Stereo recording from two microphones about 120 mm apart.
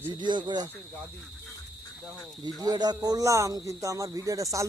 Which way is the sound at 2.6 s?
35° right (ahead or behind).